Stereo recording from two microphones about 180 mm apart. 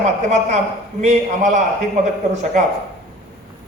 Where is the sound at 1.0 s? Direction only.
40° right (ahead or behind).